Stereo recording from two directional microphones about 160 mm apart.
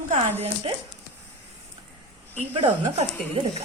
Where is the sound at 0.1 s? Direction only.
40° right (ahead or behind).